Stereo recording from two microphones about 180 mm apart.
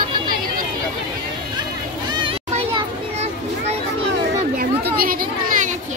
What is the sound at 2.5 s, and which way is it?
Children playing, 35° right (ahead or behind).